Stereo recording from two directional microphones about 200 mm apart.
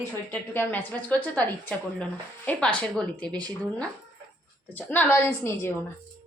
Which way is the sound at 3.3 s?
20° right (ahead or behind).